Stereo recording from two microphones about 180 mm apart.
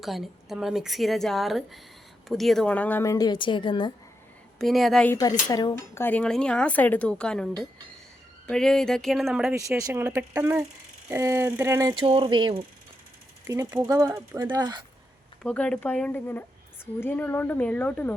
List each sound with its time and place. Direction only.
0.0 s speech: centre (ahead or behind); by 3.9 s 25° left (ahead or behind)
4.5 s speech: centre (ahead or behind)
5.5 s speech: 20° left (ahead or behind); by 9.6 s 5° right (ahead or behind)
9.6 s speech: 20° right (ahead or behind)
11.9 s speech: 30° right (ahead or behind)
15.4 s speech: 5° left (ahead or behind)